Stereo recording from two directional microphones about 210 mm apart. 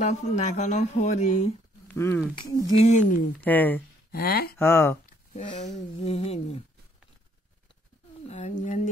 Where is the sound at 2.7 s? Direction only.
35° left (ahead or behind).